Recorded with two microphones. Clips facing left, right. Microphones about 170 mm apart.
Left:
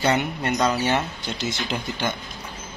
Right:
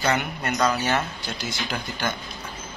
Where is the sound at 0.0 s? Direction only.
25° left (ahead or behind).